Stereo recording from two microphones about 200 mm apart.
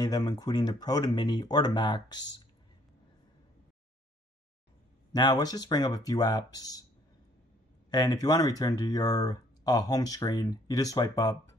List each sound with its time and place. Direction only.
0.0 s speech: 20° left (ahead or behind)
5.1 s speech: 20° left (ahead or behind)
7.9 s speech: 20° left (ahead or behind)